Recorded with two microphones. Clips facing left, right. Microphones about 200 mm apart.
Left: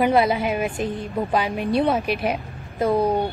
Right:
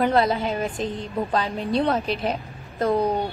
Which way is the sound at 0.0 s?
15° left (ahead or behind).